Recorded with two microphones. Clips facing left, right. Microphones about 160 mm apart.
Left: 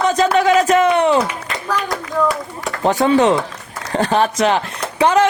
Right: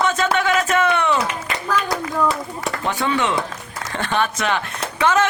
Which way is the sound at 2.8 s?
35° left (ahead or behind).